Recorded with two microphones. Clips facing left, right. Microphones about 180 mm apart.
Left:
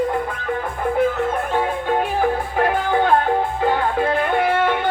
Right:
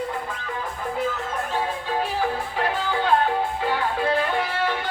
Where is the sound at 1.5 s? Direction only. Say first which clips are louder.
Left 5 dB; 55° left (ahead or behind).